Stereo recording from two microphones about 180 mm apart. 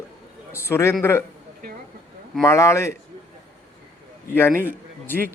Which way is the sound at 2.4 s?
15° left (ahead or behind).